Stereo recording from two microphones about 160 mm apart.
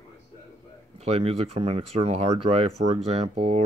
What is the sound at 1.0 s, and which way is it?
Speech, 40° right (ahead or behind).